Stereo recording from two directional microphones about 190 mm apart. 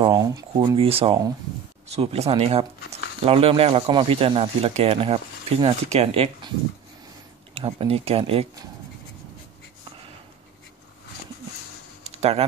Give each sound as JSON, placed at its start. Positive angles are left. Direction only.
{"t": 0.0, "sound": "speech", "side_deg": -20}
{"t": 7.5, "sound": "speech", "side_deg": -30}
{"t": 12.0, "sound": "a sound", "side_deg": -35}